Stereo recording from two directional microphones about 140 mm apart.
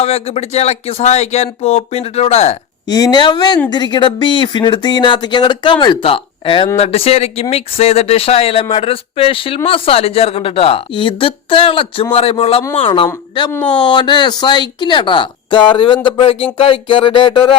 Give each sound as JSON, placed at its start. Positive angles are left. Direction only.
{"t": 0.0, "sound": "speech", "side_deg": 45}
{"t": 2.8, "sound": "speech", "side_deg": 30}
{"t": 13.5, "sound": "speech", "side_deg": 10}
{"t": 13.8, "sound": "speech", "side_deg": 30}